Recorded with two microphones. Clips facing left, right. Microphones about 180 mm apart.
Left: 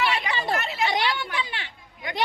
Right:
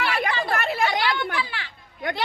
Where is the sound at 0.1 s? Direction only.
55° right (ahead or behind).